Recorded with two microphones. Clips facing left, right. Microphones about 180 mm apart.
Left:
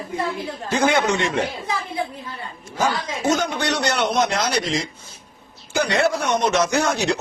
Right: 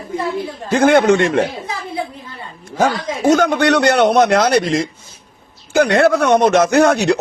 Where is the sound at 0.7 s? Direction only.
55° right (ahead or behind).